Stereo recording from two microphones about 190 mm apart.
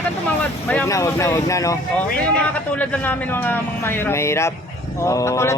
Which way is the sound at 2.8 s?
10° left (ahead or behind).